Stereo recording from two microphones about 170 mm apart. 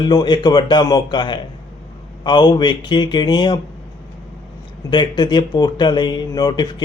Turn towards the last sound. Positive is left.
turn(degrees=25)  # may be behind; listen again after turning